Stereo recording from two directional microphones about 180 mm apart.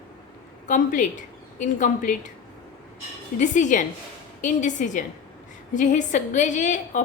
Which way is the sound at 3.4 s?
45° left (ahead or behind).